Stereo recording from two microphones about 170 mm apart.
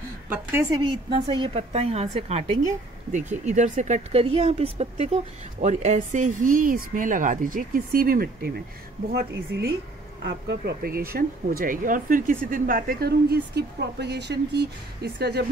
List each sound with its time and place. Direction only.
0.3 s a woman's voice: 15° right (ahead or behind); by 15.4 s 70° right (ahead or behind)